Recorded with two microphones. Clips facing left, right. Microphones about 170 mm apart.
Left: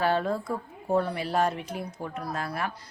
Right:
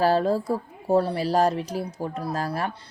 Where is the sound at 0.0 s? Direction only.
35° right (ahead or behind).